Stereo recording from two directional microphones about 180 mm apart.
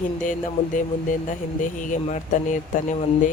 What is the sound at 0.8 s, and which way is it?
Speech, 45° left (ahead or behind).